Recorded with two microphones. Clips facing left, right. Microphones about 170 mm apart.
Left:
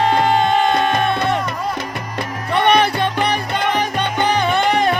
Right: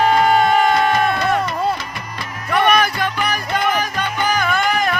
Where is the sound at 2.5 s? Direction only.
25° left (ahead or behind).